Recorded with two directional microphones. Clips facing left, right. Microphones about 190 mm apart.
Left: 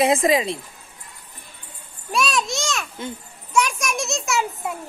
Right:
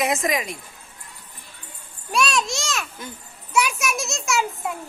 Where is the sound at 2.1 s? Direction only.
Centre (ahead or behind).